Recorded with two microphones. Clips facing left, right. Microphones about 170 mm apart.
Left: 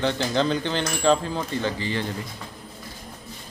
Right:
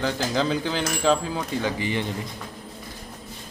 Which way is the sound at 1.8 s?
15° right (ahead or behind).